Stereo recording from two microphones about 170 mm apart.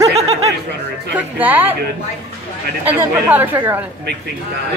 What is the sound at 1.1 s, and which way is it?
Speech, 10° right (ahead or behind).